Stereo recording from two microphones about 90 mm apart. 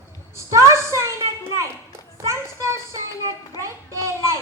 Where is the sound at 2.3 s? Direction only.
35° right (ahead or behind).